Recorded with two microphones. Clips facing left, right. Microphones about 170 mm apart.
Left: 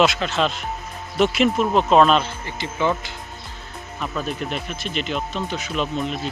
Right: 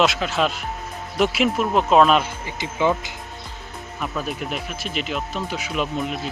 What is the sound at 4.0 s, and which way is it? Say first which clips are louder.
Speech: left 1 dB; 5° right (ahead or behind).